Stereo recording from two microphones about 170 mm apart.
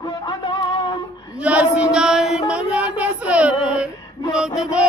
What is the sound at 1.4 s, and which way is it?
Mantra, 5° right (ahead or behind).